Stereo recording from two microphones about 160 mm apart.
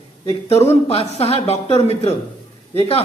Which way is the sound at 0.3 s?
40° left (ahead or behind).